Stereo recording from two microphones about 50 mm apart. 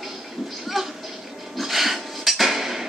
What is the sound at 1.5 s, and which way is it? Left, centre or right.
Dishes, centre.